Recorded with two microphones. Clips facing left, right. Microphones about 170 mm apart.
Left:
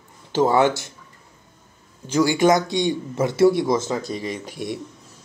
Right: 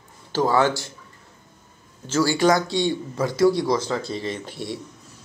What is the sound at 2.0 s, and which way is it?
Speech, 15° left (ahead or behind).